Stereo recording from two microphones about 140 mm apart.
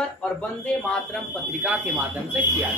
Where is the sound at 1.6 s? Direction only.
10° right (ahead or behind).